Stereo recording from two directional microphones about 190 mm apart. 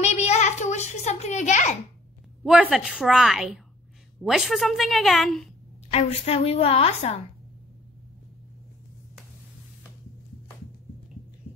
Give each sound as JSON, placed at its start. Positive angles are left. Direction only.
{"t": 0.0, "sound": "a sound", "side_deg": 35}
{"t": 2.4, "sound": "a woman's voice", "side_deg": -5}
{"t": 5.9, "sound": "a woman's voice", "side_deg": 35}